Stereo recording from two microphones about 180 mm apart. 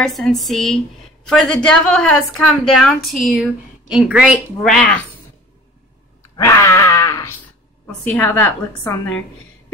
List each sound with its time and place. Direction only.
0.0 s a woman's voice: centre (ahead or behind)
6.3 s a woman's voice: 15° left (ahead or behind)